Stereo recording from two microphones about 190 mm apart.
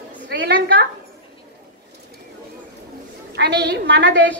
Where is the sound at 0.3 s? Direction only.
65° right (ahead or behind).